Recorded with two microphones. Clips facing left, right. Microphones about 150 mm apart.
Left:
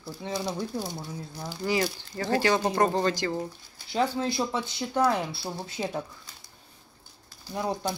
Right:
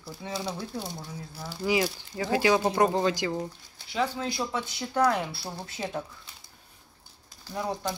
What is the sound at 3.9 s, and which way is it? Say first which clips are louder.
Speech: left 3 dB; 30° left (ahead or behind).